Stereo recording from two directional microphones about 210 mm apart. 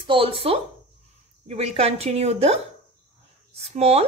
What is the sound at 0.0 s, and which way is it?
A woman's voice, 25° right (ahead or behind).